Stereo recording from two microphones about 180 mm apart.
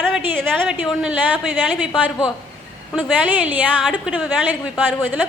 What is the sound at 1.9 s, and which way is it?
Speech, 20° left (ahead or behind).